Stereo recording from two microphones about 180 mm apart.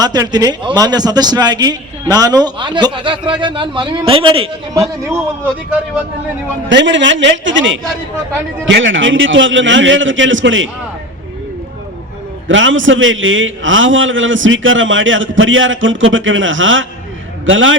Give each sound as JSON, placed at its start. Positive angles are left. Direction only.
{"t": 0.0, "sound": "a man's voice", "side_deg": -20}
{"t": 6.7, "sound": "a man's voice", "side_deg": -85}
{"t": 12.5, "sound": "a man's voice", "side_deg": -90}